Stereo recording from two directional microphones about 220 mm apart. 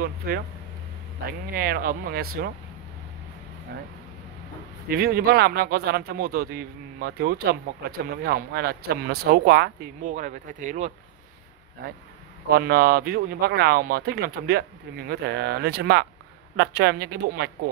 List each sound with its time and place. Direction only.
0.2 s speech: 45° right (ahead or behind)
1.5 s speech: 40° right (ahead or behind)
4.8 s speech: 45° right (ahead or behind)
12.4 s speech: 45° right (ahead or behind)